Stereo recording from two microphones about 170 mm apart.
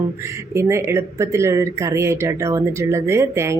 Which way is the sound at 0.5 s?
15° right (ahead or behind).